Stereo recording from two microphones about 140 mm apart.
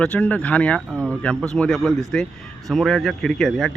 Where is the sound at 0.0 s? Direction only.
10° left (ahead or behind).